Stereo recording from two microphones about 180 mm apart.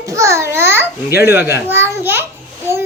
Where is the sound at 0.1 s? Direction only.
15° right (ahead or behind).